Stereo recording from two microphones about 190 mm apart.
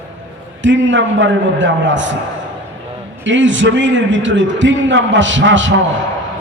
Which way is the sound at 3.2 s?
75° right (ahead or behind).